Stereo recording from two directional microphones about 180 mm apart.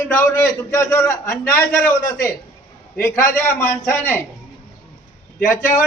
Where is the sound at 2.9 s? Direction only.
15° left (ahead or behind).